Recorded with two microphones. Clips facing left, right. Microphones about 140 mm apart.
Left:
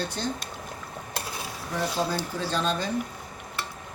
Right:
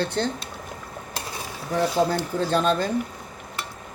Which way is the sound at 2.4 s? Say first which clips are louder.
Right 7 dB; 50° right (ahead or behind).